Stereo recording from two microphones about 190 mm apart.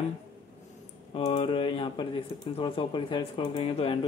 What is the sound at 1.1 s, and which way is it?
Speech, 35° left (ahead or behind).